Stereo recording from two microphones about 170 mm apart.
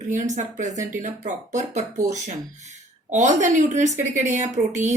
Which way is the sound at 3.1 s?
45° right (ahead or behind).